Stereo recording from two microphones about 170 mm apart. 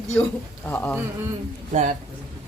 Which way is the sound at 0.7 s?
10° left (ahead or behind).